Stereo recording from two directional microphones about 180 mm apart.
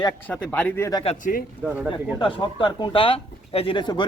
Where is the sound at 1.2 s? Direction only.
50° left (ahead or behind).